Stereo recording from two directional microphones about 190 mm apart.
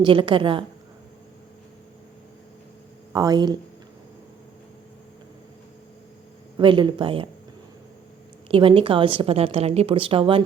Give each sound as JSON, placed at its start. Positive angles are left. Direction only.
{"t": 0.0, "sound": "speech", "side_deg": -25}
{"t": 3.1, "sound": "speech", "side_deg": -20}
{"t": 6.6, "sound": "speech", "side_deg": -25}
{"t": 8.4, "sound": "speech", "side_deg": -30}